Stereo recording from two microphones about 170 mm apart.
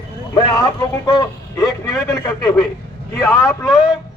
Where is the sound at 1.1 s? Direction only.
25° left (ahead or behind).